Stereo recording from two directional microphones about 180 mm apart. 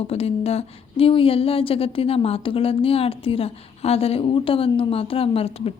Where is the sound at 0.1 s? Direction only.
35° left (ahead or behind).